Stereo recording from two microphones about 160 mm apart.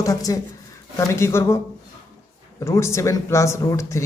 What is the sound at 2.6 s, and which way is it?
Speech, 15° left (ahead or behind).